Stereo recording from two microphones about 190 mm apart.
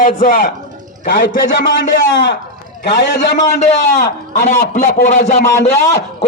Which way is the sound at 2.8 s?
60° left (ahead or behind).